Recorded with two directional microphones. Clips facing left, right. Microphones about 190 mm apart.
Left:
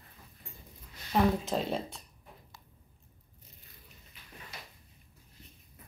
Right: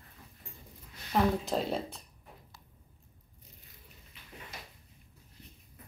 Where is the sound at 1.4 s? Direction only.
Centre (ahead or behind).